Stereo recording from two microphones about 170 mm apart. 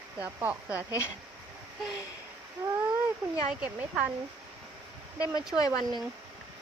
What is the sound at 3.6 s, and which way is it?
Speech, 5° right (ahead or behind).